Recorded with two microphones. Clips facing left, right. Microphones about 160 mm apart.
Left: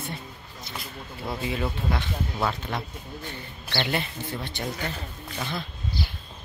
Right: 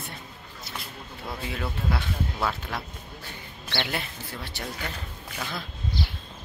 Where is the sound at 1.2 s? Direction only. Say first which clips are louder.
Left 4 dB; centre (ahead or behind).